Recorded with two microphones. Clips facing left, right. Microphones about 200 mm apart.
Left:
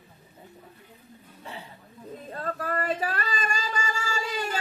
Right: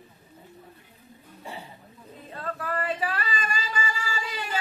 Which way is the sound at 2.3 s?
45° left (ahead or behind).